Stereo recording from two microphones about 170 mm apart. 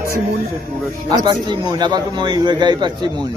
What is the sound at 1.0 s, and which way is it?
A man's voice, 20° right (ahead or behind).